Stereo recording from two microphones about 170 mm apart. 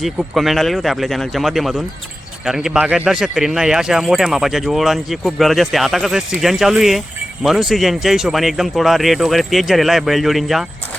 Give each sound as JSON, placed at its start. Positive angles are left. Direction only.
{"t": 0.0, "sound": "speech", "side_deg": 0}